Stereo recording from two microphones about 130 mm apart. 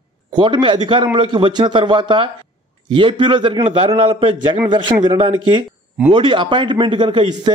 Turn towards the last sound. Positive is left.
turn(degrees=-35)  # may be behind; listen again after turning